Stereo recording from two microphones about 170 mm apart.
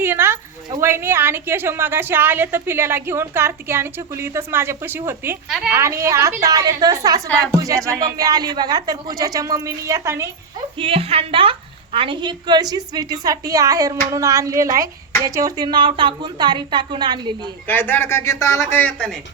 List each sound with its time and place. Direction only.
0.0 s a woman's voice: 15° right (ahead or behind)
5.5 s a woman's voice: centre (ahead or behind)
5.7 s a woman's voice: 15° right (ahead or behind)
10.8 s a woman's voice: 35° right (ahead or behind)
17.7 s speech: 10° left (ahead or behind)